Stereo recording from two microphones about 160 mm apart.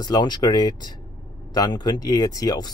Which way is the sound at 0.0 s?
25° left (ahead or behind).